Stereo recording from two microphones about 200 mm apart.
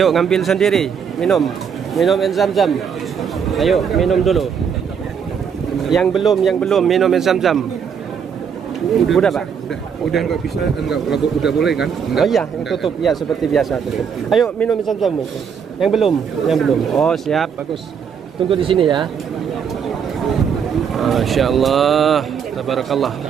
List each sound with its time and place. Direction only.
0.0 s a man's voice: centre (ahead or behind)
5.9 s a man's voice: centre (ahead or behind)
9.0 s a man's voice: centre (ahead or behind)
18.5 s speech: 25° right (ahead or behind)
20.9 s a man's voice: centre (ahead or behind)